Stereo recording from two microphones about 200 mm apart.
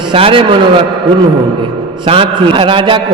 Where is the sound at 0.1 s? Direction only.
25° right (ahead or behind).